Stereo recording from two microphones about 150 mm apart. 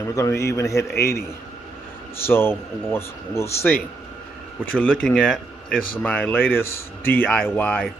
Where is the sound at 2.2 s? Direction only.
15° left (ahead or behind).